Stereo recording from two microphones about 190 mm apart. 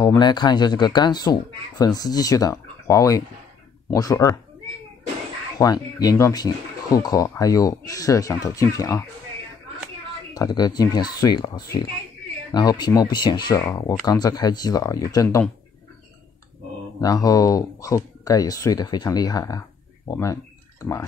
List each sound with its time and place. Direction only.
0.0 s speech: 20° left (ahead or behind)
5.6 s speech: 20° left (ahead or behind)
10.3 s speech: 20° left (ahead or behind)
17.0 s speech: 20° left (ahead or behind)